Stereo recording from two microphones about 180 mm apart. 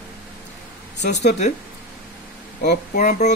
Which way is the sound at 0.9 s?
75° left (ahead or behind).